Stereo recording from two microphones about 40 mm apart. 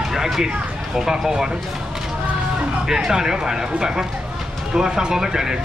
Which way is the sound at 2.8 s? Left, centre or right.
Centre.